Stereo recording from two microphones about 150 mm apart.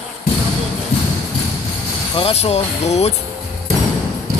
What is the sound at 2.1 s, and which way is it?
Speech, 45° left (ahead or behind).